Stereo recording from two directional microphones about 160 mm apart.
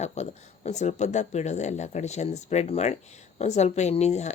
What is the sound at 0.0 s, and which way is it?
Speech, 45° left (ahead or behind).